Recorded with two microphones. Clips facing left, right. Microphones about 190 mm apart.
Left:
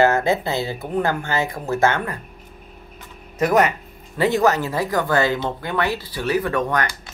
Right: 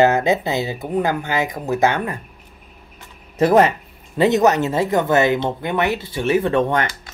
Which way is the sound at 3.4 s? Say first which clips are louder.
Right 4 dB; 30° right (ahead or behind).